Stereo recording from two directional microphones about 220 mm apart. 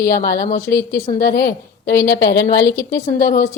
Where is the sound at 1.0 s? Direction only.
40° left (ahead or behind).